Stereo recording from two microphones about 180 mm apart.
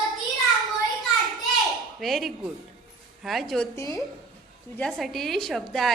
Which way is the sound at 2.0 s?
Centre (ahead or behind).